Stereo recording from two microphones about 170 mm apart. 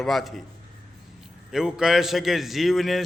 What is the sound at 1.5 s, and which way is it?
A man's voice, 5° right (ahead or behind).